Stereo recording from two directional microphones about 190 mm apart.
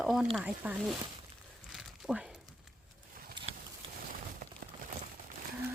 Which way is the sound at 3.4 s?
25° right (ahead or behind).